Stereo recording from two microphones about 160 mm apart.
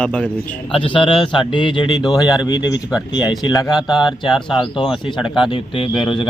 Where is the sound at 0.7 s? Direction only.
35° left (ahead or behind).